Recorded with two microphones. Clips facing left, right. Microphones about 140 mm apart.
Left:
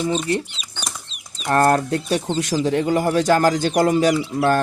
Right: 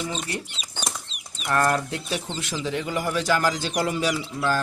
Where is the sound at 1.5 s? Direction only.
40° left (ahead or behind).